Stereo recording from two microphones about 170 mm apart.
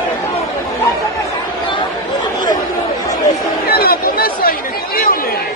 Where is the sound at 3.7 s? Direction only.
60° left (ahead or behind).